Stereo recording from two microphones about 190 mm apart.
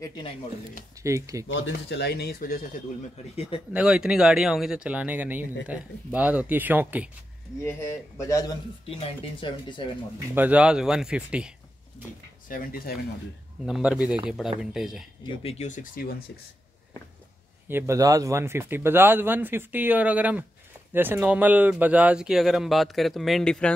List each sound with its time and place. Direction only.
0.0 s speech: 20° left (ahead or behind)
1.0 s speech: 15° right (ahead or behind)
1.5 s speech: 70° left (ahead or behind); by 2.6 s 50° left (ahead or behind)
3.3 s speech: 30° left (ahead or behind)
3.7 s speech: 5° right (ahead or behind)
7.6 s speech: 15° left (ahead or behind)
8.8 s speech: 30° left (ahead or behind)
10.3 s speech: 10° right (ahead or behind)
12.4 s speech: 45° left (ahead or behind)
13.7 s speech: 5° right (ahead or behind)
15.2 s speech: 35° left (ahead or behind)
17.6 s speech: 15° right (ahead or behind); by 23.7 s 5° left (ahead or behind)